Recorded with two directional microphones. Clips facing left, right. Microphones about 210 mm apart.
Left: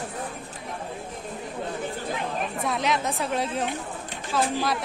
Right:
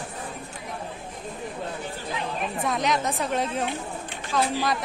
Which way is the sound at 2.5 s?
Centre (ahead or behind).